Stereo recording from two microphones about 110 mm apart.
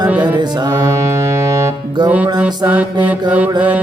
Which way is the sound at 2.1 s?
10° right (ahead or behind).